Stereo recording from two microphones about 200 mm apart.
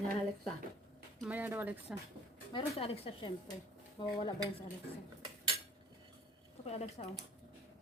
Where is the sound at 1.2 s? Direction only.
10° right (ahead or behind).